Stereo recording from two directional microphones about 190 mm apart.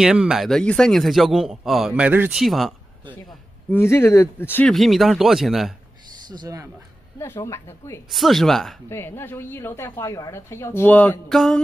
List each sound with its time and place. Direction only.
0.0 s a man's voice: 5° right (ahead or behind)
3.7 s a man's voice: 15° left (ahead or behind)
6.2 s speech: 20° right (ahead or behind)
7.3 s a woman's voice: 15° left (ahead or behind)
8.1 s a man's voice: centre (ahead or behind)
8.8 s a woman's voice: 15° left (ahead or behind)